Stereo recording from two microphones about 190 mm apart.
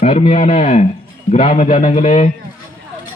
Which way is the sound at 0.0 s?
35° left (ahead or behind).